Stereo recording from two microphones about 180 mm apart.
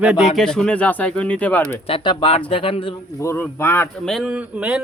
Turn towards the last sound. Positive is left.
turn(degrees=-5)  # may be behind; listen again after turning